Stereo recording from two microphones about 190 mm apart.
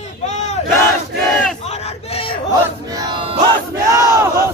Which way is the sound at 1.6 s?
35° left (ahead or behind).